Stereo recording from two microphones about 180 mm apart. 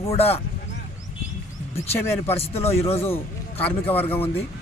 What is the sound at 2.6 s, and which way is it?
Speech, 15° left (ahead or behind).